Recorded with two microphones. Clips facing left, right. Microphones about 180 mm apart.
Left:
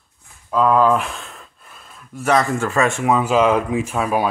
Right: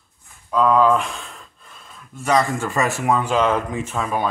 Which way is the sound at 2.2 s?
5° left (ahead or behind).